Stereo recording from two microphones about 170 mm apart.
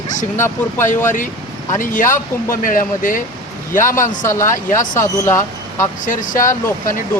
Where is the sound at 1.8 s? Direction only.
50° left (ahead or behind).